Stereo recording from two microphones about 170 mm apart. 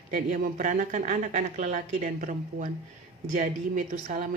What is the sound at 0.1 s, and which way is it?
Speech, 50° right (ahead or behind).